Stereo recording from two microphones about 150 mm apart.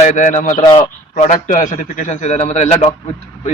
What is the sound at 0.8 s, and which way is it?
A man's voice, 55° left (ahead or behind).